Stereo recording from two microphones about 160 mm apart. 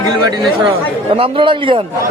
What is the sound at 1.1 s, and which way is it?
Speech, 35° right (ahead or behind).